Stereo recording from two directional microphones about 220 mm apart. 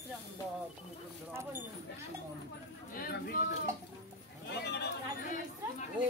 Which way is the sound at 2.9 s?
40° left (ahead or behind).